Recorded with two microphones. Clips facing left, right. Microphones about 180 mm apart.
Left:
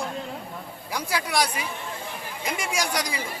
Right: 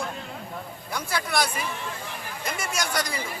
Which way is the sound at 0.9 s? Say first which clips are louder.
Left 1 dB; 10° left (ahead or behind).